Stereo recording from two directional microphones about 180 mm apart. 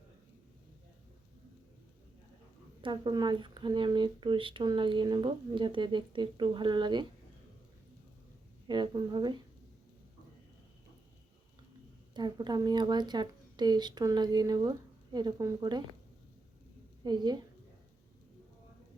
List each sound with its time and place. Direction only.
2.8 s speech: 25° right (ahead or behind)
8.6 s speech: 25° right (ahead or behind)
12.1 s speech: 25° right (ahead or behind)
17.0 s a woman's voice: 25° right (ahead or behind)